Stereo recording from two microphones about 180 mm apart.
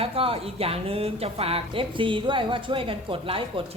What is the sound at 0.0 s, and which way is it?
Speech, 30° right (ahead or behind).